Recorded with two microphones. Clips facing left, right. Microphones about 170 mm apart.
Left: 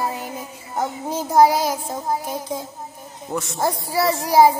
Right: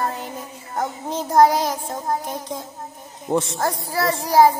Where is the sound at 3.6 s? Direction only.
10° left (ahead or behind).